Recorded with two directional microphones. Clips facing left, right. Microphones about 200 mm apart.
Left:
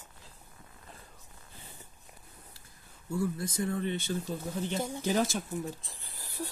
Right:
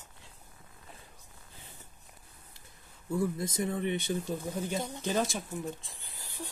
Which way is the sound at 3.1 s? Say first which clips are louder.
Right 1 dB; 20° right (ahead or behind).